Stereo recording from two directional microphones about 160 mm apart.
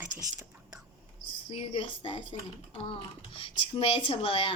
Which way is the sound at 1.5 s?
35° left (ahead or behind).